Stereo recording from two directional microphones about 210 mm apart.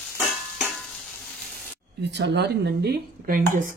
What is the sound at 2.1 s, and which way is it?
Speech, 55° right (ahead or behind).